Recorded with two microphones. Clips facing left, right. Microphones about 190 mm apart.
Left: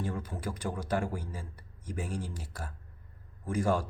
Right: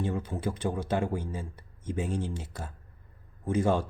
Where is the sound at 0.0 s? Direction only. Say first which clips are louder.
Right 5 dB; 25° right (ahead or behind).